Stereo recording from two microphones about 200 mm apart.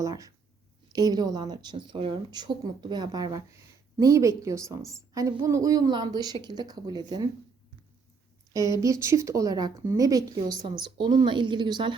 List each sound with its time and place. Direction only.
0.0 s a woman's voice: 15° right (ahead or behind)
8.5 s speech: 15° right (ahead or behind)